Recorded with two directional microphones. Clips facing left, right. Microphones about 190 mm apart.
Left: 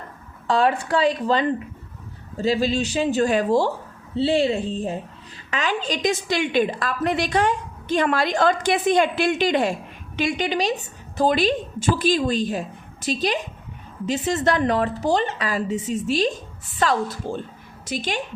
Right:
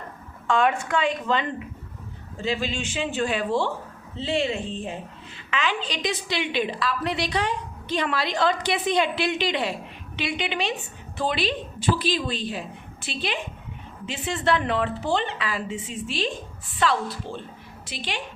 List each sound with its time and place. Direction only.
0.4 s a woman's voice: 35° left (ahead or behind)